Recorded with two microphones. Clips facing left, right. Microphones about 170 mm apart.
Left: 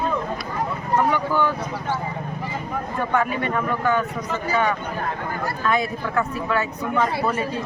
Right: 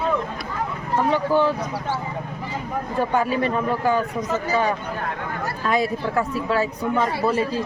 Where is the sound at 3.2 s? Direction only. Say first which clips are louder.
Even; 30° right (ahead or behind).